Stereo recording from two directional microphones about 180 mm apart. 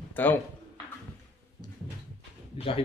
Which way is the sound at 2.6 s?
30° left (ahead or behind).